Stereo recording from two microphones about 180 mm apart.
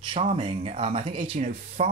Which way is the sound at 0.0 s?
35° right (ahead or behind).